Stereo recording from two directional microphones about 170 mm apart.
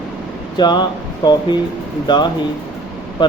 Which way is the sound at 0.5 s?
25° left (ahead or behind).